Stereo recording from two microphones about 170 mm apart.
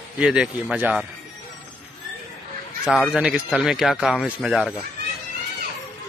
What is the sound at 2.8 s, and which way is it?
Speech, 5° right (ahead or behind).